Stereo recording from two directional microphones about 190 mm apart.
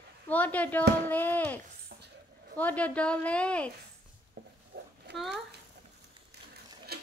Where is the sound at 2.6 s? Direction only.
10° left (ahead or behind).